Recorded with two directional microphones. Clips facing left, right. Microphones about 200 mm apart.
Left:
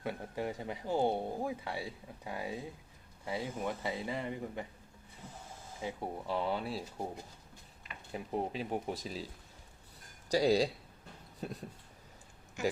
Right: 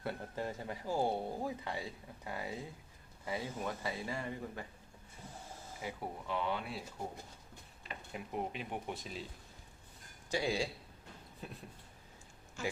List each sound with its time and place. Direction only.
0.0 s speech: 15° left (ahead or behind)
5.8 s speech: 30° left (ahead or behind)
8.1 s speech: 35° left (ahead or behind)
10.2 s speech: 40° left (ahead or behind)
12.6 s speech: 15° left (ahead or behind)